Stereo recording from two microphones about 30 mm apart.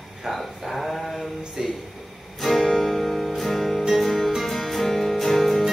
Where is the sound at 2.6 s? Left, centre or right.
Centre.